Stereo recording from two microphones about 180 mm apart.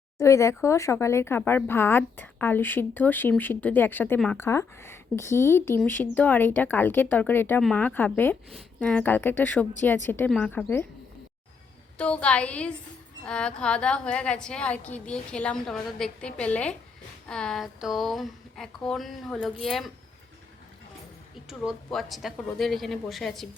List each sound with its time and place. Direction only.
0.2 s speech: 15° left (ahead or behind)
11.9 s a woman's voice: 5° left (ahead or behind)
21.6 s a woman's voice: centre (ahead or behind)